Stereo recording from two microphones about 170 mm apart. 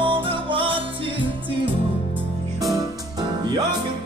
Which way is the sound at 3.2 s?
25° right (ahead or behind).